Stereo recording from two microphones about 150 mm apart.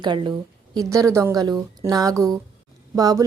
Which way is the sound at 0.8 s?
20° right (ahead or behind).